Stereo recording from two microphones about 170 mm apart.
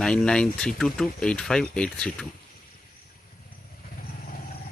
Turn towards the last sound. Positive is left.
turn(degrees=55)  # may be behind; listen again after turning